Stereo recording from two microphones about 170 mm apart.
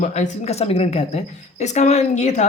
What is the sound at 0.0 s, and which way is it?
A woman's voice, 40° left (ahead or behind).